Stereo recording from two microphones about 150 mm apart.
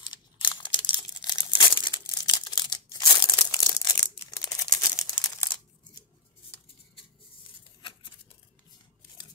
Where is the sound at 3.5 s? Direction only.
25° left (ahead or behind).